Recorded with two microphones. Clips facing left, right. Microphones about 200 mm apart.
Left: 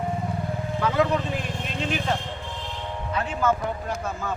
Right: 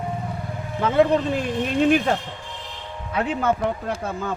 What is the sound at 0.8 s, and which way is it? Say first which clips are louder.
Speech: right 5 dB; 30° right (ahead or behind).